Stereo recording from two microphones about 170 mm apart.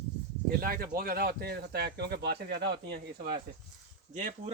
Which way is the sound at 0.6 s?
55° right (ahead or behind).